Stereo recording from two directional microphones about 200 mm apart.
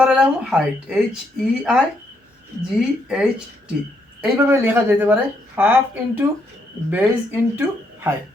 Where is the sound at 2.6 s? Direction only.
5° right (ahead or behind).